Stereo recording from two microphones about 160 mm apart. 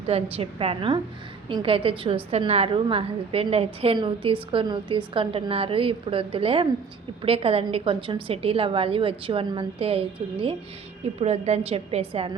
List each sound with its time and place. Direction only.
0.1 s a woman's voice: 40° right (ahead or behind)